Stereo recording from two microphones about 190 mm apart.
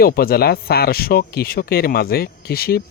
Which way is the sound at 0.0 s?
50° left (ahead or behind).